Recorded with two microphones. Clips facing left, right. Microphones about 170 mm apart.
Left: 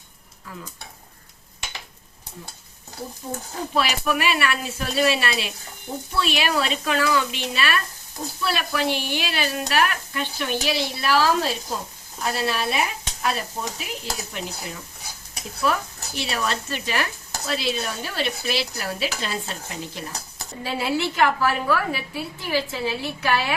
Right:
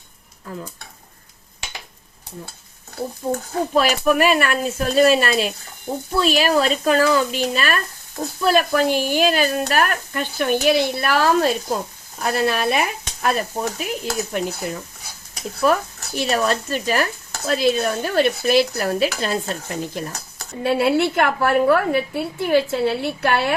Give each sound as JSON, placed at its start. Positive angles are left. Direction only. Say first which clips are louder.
{"t": 0.5, "sound": "stir", "louder": "right 7 dB", "side_deg": -45}
{"t": 3.8, "sound": "stir", "louder": "right 6 dB", "side_deg": -45}
{"t": 6.1, "sound": "speech", "louder": "right 6 dB", "side_deg": -40}
{"t": 8.4, "sound": "stir", "louder": "right 8 dB", "side_deg": -45}
{"t": 12.2, "sound": "a woman's voice", "louder": "right 5 dB", "side_deg": -55}
{"t": 13.2, "sound": "stir", "louder": "right 5 dB", "side_deg": -50}
{"t": 20.6, "sound": "a woman's voice", "louder": "right 8 dB", "side_deg": -60}